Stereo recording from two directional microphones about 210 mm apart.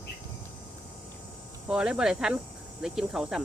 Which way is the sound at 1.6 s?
5° right (ahead or behind).